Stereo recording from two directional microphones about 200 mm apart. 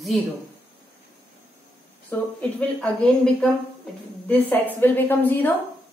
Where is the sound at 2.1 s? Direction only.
5° left (ahead or behind).